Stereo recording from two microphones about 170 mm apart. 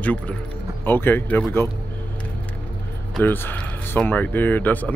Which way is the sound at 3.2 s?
10° left (ahead or behind).